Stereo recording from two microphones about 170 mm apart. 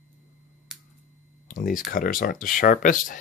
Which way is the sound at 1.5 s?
50° left (ahead or behind).